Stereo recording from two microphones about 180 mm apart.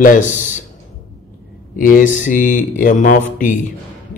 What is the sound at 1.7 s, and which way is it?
Speech, 50° left (ahead or behind).